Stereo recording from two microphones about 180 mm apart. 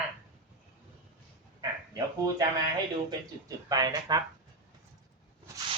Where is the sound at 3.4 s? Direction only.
20° right (ahead or behind).